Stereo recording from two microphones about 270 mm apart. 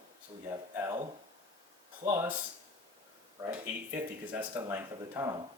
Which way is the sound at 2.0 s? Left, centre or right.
Centre.